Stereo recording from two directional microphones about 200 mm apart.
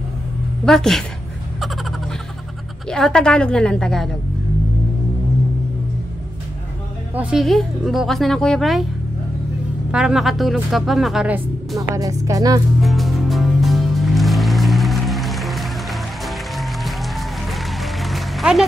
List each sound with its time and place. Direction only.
0.7 s speech: centre (ahead or behind)
2.9 s speech: 5° left (ahead or behind)
7.2 s speech: 5° right (ahead or behind)
9.8 s speech: 5° right (ahead or behind)
11.9 s speech: 15° right (ahead or behind)
12.8 s music: centre (ahead or behind)
18.0 s music: centre (ahead or behind)